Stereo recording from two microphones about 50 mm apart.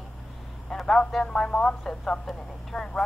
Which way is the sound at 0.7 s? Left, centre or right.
Centre.